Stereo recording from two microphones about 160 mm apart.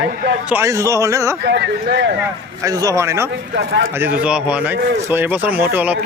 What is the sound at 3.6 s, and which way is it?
Speech, 90° right.